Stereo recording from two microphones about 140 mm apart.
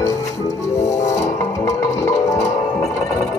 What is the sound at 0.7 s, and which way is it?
Music, 20° left (ahead or behind).